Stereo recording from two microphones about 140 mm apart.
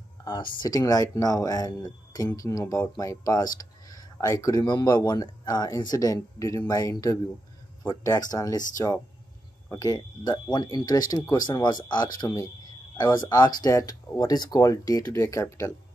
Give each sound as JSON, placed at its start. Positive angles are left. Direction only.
{"t": 0.2, "sound": "speech", "side_deg": 35}